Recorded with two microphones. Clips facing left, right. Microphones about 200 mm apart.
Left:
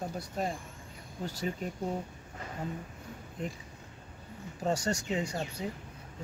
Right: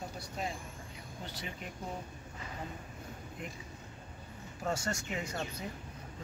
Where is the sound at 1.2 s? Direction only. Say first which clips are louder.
Left 9 dB; 40° left (ahead or behind).